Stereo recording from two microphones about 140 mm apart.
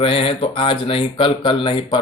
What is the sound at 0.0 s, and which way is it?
Speech, 40° left (ahead or behind).